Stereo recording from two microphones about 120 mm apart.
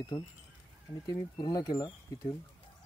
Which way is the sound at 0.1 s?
35° left (ahead or behind).